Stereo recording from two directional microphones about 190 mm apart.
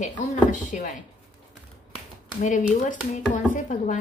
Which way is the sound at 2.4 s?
40° left (ahead or behind).